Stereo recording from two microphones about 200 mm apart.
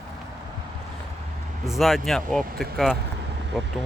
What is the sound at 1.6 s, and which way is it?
Speech, centre (ahead or behind).